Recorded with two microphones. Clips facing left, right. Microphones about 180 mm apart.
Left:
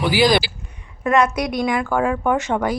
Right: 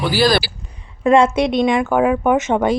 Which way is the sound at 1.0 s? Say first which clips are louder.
Right 5 dB; 25° right (ahead or behind).